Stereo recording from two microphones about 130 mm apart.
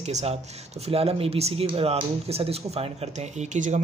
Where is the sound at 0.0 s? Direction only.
55° right (ahead or behind).